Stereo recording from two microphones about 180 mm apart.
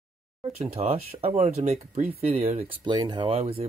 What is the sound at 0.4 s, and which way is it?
Speech, 35° right (ahead or behind).